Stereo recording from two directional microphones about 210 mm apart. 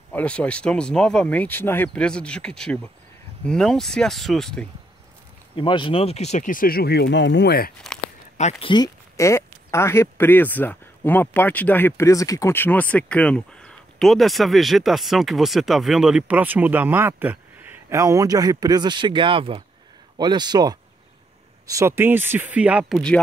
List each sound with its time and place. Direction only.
0.1 s speech: 5° left (ahead or behind)
5.6 s speech: 25° left (ahead or behind); by 7.7 s 50° left (ahead or behind)
8.4 s speech: 30° left (ahead or behind); by 23.1 s centre (ahead or behind)